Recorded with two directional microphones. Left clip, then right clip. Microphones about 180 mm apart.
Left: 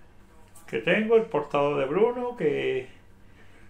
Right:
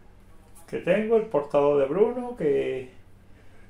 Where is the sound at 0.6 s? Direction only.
Centre (ahead or behind).